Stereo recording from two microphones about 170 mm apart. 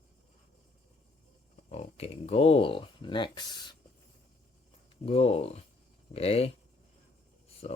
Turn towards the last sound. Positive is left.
turn(degrees=40)  # may be behind; listen again after turning